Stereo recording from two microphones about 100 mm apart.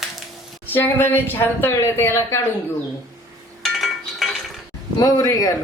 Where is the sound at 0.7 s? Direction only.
20° left (ahead or behind).